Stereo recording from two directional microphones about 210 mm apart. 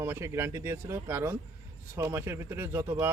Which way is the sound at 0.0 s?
10° right (ahead or behind).